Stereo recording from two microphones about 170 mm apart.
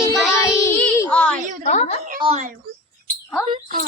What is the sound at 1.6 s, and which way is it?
Speech, 45° left (ahead or behind).